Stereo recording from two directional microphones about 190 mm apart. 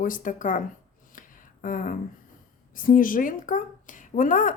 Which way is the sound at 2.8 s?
45° left (ahead or behind).